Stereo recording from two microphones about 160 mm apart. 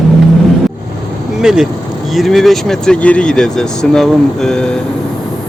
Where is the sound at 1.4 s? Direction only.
5° right (ahead or behind).